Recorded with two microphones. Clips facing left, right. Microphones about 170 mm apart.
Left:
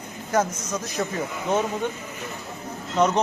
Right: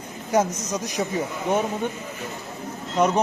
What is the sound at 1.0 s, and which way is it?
Speech, 10° right (ahead or behind).